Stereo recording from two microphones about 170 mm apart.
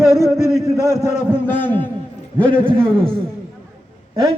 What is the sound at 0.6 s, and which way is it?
Speech, 20° right (ahead or behind).